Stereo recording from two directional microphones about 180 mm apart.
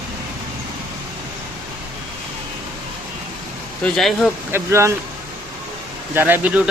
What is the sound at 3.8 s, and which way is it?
Speech, centre (ahead or behind).